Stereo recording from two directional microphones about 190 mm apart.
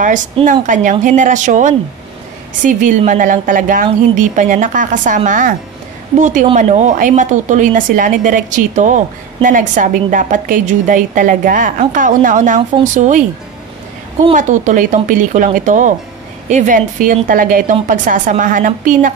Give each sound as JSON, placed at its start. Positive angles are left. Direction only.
{"t": 0.5, "sound": "speech", "side_deg": -45}
{"t": 14.3, "sound": "speech", "side_deg": -40}